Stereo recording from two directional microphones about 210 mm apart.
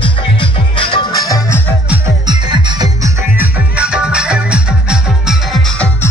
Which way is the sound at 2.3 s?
20° right (ahead or behind).